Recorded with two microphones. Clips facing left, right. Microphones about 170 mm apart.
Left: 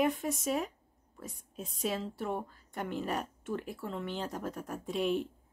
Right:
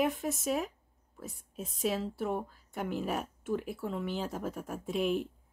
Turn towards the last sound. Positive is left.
turn(degrees=0)  # may be behind; listen again after turning